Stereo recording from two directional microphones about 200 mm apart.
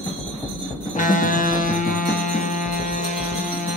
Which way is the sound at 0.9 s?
40° left (ahead or behind).